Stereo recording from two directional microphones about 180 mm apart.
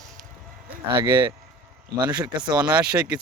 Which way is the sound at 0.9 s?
25° right (ahead or behind).